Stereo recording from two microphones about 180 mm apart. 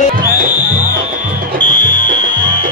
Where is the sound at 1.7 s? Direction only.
45° left (ahead or behind).